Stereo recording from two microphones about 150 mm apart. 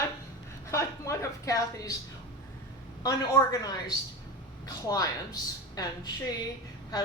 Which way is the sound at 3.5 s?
25° left (ahead or behind).